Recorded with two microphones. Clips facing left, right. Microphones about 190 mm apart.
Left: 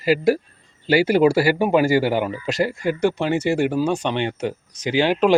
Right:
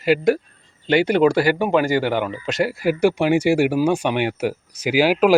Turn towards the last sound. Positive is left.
turn(degrees=-5)  # may be behind; listen again after turning